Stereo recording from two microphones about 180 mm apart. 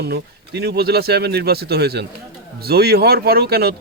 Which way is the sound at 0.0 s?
65° right (ahead or behind).